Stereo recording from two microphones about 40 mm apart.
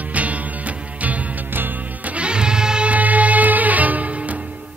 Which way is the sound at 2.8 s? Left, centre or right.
Right.